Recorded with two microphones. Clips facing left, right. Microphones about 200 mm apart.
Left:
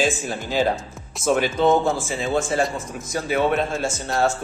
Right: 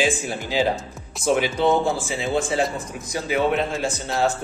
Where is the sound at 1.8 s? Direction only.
15° right (ahead or behind).